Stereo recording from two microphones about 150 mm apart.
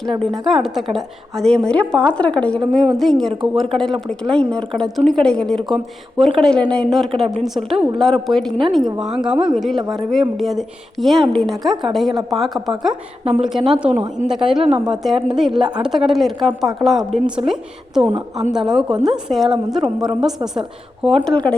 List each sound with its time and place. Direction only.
0.0 s a woman's voice: centre (ahead or behind)